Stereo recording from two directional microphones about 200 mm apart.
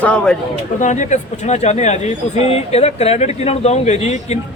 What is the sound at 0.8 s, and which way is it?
Speech, 40° left (ahead or behind).